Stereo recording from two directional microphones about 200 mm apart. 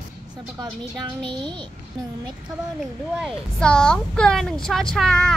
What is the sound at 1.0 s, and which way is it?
Speech, 25° right (ahead or behind).